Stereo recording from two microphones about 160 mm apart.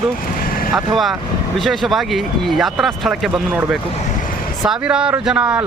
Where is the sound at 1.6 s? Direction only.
Centre (ahead or behind).